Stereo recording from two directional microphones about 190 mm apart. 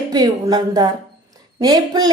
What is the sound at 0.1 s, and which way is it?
A woman's voice, 20° right (ahead or behind).